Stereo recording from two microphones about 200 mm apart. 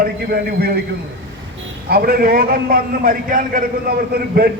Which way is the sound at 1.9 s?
50° right (ahead or behind).